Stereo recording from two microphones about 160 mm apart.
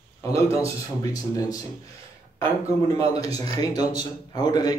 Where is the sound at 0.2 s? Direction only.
20° left (ahead or behind).